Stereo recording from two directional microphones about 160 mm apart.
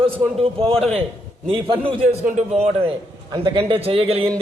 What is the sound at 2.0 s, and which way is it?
Speech, 50° right (ahead or behind).